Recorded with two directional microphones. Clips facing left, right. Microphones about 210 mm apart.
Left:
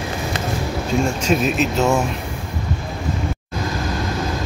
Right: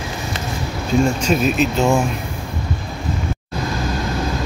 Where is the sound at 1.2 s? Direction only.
Centre (ahead or behind).